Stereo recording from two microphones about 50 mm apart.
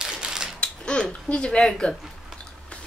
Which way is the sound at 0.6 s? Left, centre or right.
Centre.